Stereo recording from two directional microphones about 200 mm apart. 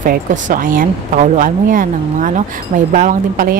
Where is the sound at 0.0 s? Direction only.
40° right (ahead or behind).